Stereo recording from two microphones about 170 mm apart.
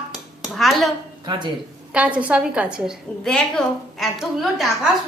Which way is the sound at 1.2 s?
25° right (ahead or behind).